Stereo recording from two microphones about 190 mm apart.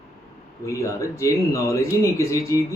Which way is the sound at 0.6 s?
15° left (ahead or behind).